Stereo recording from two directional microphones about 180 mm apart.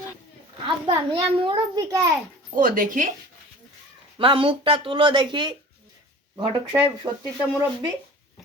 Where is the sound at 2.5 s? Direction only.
50° right (ahead or behind).